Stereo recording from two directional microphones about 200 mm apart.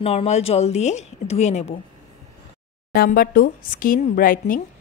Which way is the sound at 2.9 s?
45° left (ahead or behind).